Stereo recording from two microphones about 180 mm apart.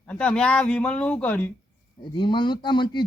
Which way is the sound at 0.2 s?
5° left (ahead or behind).